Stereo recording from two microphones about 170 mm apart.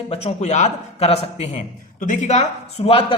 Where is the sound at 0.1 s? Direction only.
40° left (ahead or behind).